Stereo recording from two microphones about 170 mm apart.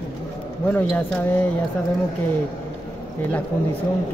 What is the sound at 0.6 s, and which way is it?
Speech, 10° left (ahead or behind).